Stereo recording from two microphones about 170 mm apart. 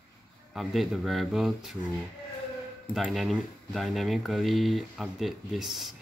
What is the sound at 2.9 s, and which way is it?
Speech, centre (ahead or behind).